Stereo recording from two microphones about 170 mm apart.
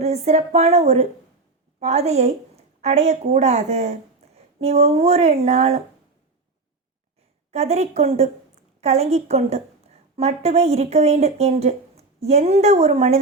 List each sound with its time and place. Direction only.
0.0 s speech: 40° right (ahead or behind)
7.5 s a woman's voice: 40° right (ahead or behind)